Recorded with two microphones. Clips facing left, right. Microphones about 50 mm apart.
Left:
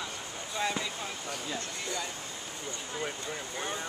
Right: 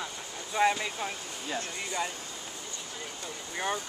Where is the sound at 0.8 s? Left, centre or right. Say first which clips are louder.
Right 2 dB; right.